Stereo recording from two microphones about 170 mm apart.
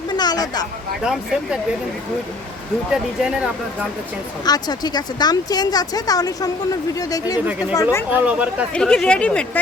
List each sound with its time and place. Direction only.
0.1 s a sound: 25° left (ahead or behind)
2.9 s a woman's voice: 5° right (ahead or behind)
4.4 s speech: 25° left (ahead or behind)
7.4 s speech: 5° right (ahead or behind)
7.8 s speech: 15° left (ahead or behind)
8.1 s speech: 10° right (ahead or behind)
8.7 s a woman's voice: 5° left (ahead or behind)